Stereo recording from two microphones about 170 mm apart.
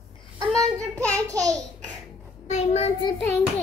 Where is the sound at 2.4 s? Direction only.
40° left (ahead or behind).